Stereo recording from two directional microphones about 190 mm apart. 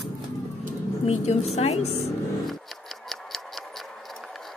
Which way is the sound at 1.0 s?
35° left (ahead or behind).